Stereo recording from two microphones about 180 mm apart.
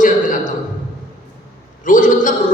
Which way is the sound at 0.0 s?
45° left (ahead or behind).